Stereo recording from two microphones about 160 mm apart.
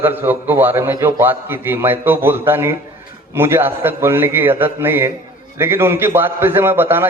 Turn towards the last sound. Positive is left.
turn(degrees=-15)  # may be behind; listen again after turning